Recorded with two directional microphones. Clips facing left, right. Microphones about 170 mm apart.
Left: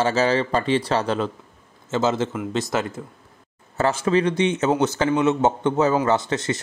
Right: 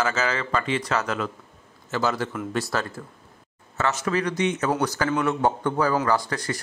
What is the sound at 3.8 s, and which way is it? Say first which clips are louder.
Speech: left 5 dB; 30° left (ahead or behind).